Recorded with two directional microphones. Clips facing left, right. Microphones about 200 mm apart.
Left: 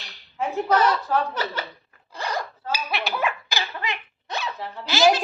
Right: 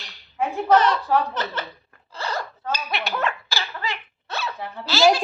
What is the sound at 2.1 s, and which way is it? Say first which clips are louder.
Zipper: even; 15° left (ahead or behind).